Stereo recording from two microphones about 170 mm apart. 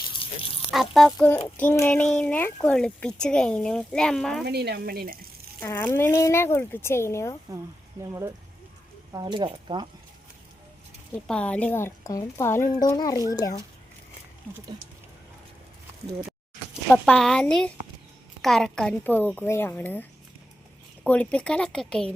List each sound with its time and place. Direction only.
0.7 s speech: centre (ahead or behind)
4.4 s speech: 70° right (ahead or behind)
5.5 s speech: 15° left (ahead or behind)
9.1 s speech: 25° right (ahead or behind)
11.3 s speech: 5° left (ahead or behind)
16.9 s speech: 5° left (ahead or behind)